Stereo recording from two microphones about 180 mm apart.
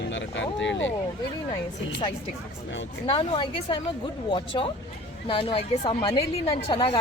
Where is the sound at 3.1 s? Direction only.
30° left (ahead or behind).